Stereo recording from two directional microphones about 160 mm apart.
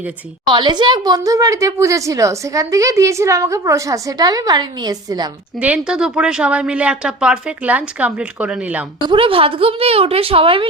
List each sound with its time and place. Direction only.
0.4 s a woman's voice: 30° right (ahead or behind)
5.5 s a woman's voice: 10° right (ahead or behind)
9.0 s a woman's voice: 35° right (ahead or behind)